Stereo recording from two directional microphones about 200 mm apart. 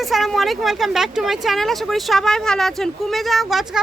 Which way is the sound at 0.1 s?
Centre (ahead or behind).